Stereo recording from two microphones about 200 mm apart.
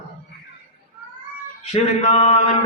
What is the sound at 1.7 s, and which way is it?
Mantra, 35° left (ahead or behind).